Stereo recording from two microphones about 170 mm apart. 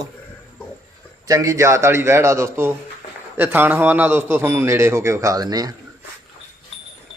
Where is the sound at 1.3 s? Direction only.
20° right (ahead or behind).